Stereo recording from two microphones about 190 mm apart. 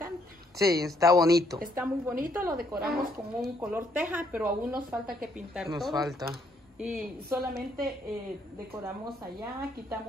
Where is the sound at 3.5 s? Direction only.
10° right (ahead or behind).